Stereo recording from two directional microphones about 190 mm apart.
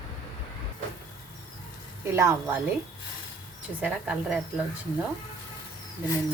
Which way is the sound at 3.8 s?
5° right (ahead or behind).